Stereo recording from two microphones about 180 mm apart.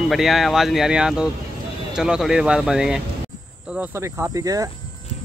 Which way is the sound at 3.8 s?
15° right (ahead or behind).